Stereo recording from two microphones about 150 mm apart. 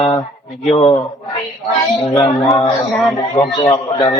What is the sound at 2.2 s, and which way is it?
Speech, 25° left (ahead or behind).